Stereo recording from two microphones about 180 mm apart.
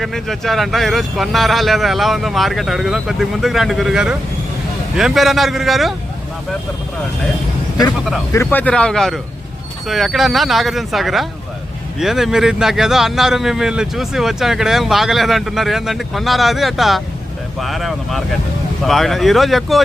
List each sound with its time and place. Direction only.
0.0 s speech: centre (ahead or behind)
7.9 s speech: centre (ahead or behind)
8.3 s speech: 10° left (ahead or behind)